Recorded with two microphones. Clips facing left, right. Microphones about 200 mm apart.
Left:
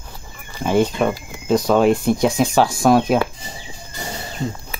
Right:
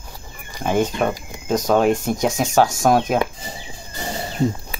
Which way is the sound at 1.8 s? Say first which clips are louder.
Left 3 dB; 45° right (ahead or behind).